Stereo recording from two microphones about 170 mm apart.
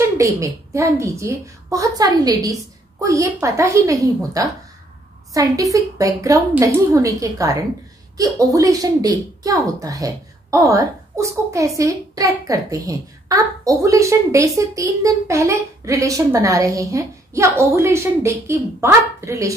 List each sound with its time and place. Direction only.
0.0 s a woman's voice: 15° right (ahead or behind)